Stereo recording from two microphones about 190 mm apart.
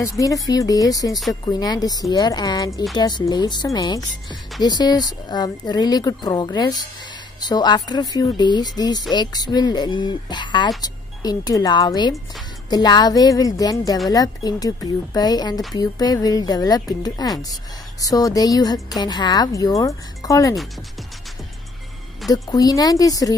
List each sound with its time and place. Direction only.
0.2 s speech: 20° left (ahead or behind)
22.3 s speech: 20° left (ahead or behind)